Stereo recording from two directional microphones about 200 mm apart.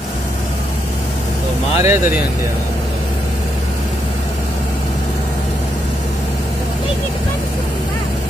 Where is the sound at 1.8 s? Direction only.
10° right (ahead or behind).